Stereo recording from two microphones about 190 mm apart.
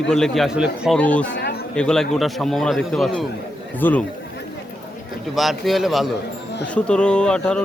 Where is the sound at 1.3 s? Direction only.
65° left (ahead or behind).